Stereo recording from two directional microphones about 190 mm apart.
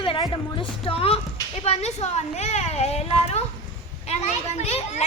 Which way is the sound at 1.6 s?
35° left (ahead or behind).